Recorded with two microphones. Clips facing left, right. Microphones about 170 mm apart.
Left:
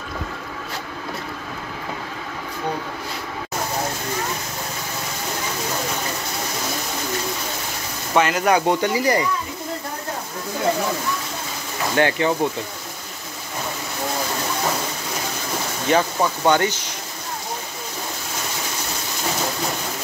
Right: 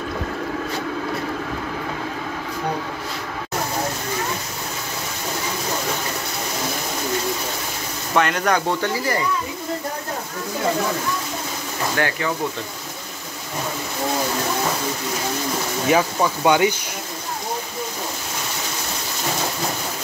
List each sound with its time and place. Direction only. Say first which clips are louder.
8.1 s speech: left 2 dB; 5° left (ahead or behind)
12.0 s speech: left 5 dB; 25° left (ahead or behind)
15.9 s speech: even; 5° right (ahead or behind)